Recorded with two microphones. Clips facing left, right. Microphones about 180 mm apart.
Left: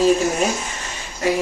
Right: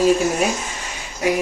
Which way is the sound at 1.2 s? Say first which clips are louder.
Even; 15° right (ahead or behind).